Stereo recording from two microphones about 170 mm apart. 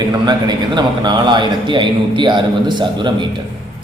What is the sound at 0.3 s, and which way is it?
A man's voice, 25° right (ahead or behind).